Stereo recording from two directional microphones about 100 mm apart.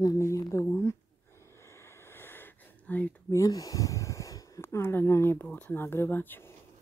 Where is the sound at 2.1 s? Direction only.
20° left (ahead or behind).